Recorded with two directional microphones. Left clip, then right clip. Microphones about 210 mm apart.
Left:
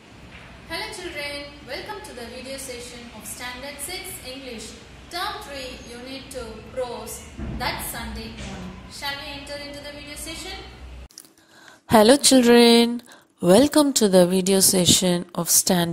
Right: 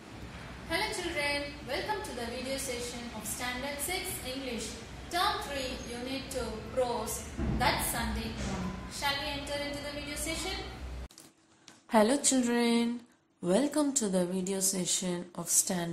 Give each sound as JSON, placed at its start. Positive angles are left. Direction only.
{"t": 0.7, "sound": "a sound", "side_deg": 0}
{"t": 7.5, "sound": "a woman's voice", "side_deg": 0}
{"t": 11.9, "sound": "a woman's voice", "side_deg": 40}